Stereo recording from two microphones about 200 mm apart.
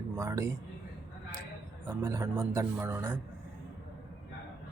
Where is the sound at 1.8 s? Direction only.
15° right (ahead or behind).